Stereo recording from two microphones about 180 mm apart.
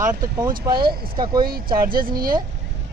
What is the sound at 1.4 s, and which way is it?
Speech, 55° right (ahead or behind).